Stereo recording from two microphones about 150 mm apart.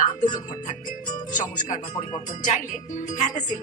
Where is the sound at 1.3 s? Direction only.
60° left (ahead or behind).